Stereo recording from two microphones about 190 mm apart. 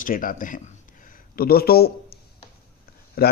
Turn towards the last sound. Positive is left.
turn(degrees=55)  # may be behind; listen again after turning